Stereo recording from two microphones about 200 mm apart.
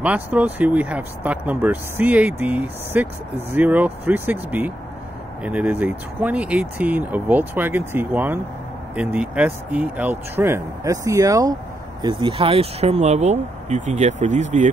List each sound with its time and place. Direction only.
0.0 s speech: 5° right (ahead or behind); by 14.7 s 35° right (ahead or behind)